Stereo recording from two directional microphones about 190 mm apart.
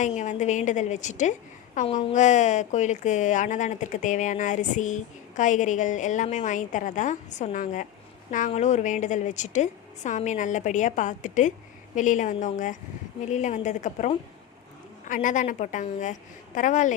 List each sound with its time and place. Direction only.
0.0 s a woman's voice: 40° left (ahead or behind)
1.9 s a woman's voice: 30° left (ahead or behind)